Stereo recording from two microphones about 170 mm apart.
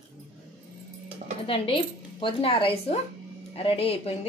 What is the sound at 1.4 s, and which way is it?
Speech, 30° left (ahead or behind).